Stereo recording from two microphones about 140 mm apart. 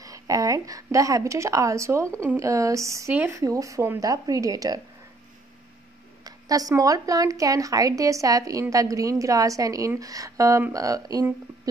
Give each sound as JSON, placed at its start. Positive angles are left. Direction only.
{"t": 0.0, "sound": "speech", "side_deg": -25}
{"t": 3.1, "sound": "a woman's voice", "side_deg": -10}
{"t": 3.3, "sound": "speech", "side_deg": -25}
{"t": 6.2, "sound": "speech", "side_deg": -25}